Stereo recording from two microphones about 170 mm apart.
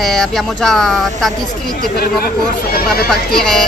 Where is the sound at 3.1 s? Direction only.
5° left (ahead or behind).